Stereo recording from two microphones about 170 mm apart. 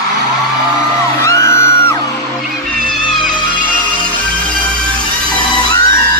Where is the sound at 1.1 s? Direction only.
15° left (ahead or behind).